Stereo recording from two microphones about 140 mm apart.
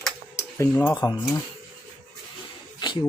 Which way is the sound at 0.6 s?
20° left (ahead or behind).